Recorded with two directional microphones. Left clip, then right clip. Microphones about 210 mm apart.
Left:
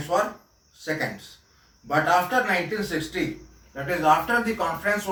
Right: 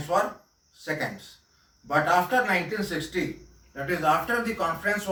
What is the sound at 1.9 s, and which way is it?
Speech, 10° right (ahead or behind).